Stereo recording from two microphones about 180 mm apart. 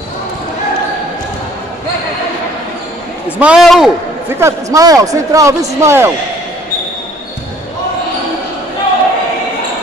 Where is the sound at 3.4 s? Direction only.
5° right (ahead or behind).